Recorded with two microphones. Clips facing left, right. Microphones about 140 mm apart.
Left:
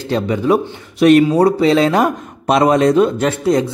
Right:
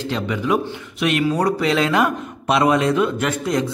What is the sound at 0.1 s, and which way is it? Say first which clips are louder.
Speech: left 7 dB; 35° left (ahead or behind).